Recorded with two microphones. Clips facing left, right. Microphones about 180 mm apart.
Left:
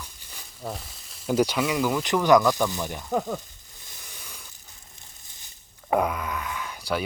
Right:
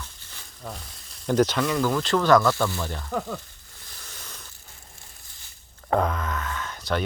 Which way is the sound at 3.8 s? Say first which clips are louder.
Right 1 dB; 15° left (ahead or behind).